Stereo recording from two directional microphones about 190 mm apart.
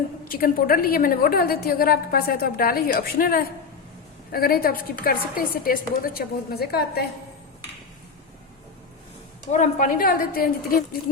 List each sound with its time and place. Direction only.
0.3 s a woman's voice: 50° left (ahead or behind)
9.5 s a woman's voice: 40° left (ahead or behind)